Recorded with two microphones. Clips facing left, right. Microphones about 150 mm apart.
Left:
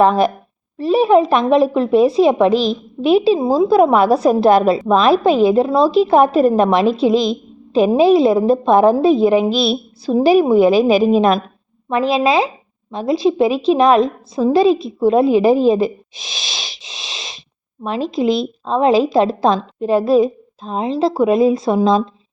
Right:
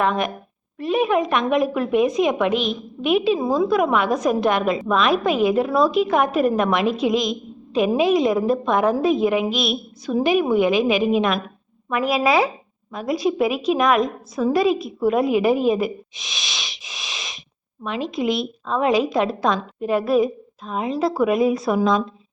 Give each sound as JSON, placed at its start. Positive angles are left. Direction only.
{"t": 0.0, "sound": "a woman's voice", "side_deg": 35}